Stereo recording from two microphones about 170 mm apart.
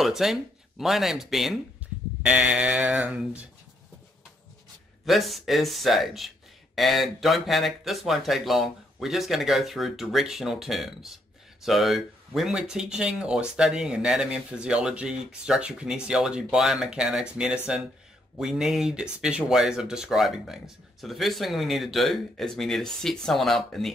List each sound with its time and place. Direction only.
0.0 s speech: centre (ahead or behind)
5.0 s speech: centre (ahead or behind)